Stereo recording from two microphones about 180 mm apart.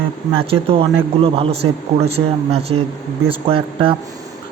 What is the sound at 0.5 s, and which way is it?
Speech, 30° right (ahead or behind).